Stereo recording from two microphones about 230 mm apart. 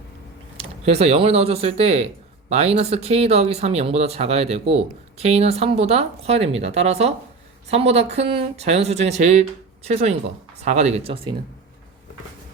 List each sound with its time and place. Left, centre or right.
0.5 s speech: right